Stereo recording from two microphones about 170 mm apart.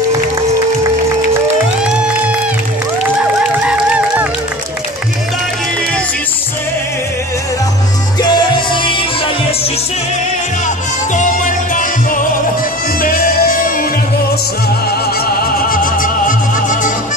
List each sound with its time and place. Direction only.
1.9 s music: 5° right (ahead or behind)
3.6 s a sound: 5° right (ahead or behind)
8.2 s music: 25° left (ahead or behind)
11.1 s music: 50° left (ahead or behind)
15.7 s music: 55° left (ahead or behind)